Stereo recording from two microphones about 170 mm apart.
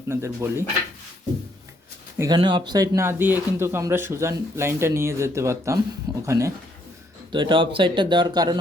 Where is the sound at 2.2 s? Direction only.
25° right (ahead or behind).